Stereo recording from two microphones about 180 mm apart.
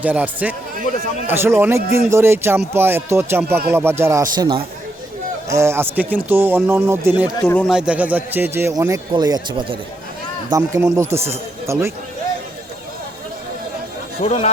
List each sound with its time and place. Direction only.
0.0 s speech: 10° right (ahead or behind)
7.4 s speech: centre (ahead or behind); by 11.9 s 15° right (ahead or behind)
14.2 s speech: 35° left (ahead or behind)